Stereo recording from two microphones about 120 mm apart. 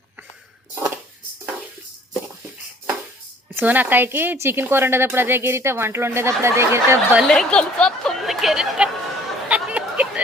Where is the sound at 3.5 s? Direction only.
15° right (ahead or behind).